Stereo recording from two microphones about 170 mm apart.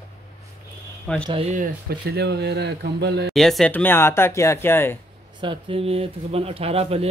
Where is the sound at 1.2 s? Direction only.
30° right (ahead or behind).